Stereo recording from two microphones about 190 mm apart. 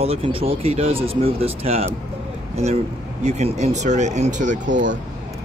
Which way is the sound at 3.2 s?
35° right (ahead or behind).